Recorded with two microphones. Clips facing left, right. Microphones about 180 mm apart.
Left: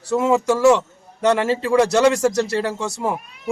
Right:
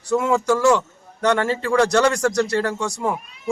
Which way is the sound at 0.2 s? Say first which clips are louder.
Left 4 dB; 25° left (ahead or behind).